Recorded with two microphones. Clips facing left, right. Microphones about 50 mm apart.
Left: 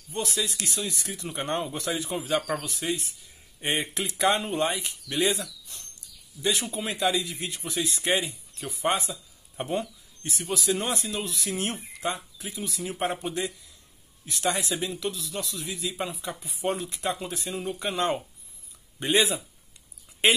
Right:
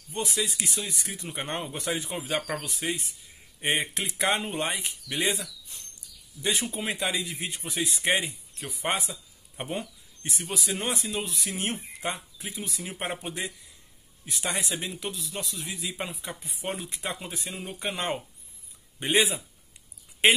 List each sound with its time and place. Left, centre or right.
0.1 s speech: right
6.4 s a man's voice: right
14.5 s speech: right